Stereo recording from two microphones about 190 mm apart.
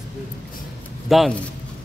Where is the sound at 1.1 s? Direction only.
Centre (ahead or behind).